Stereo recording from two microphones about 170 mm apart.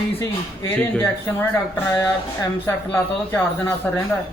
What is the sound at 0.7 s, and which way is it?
Speech, 5° left (ahead or behind).